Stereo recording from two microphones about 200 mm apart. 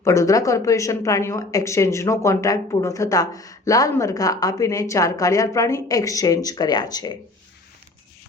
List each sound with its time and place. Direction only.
0.0 s speech: 15° left (ahead or behind)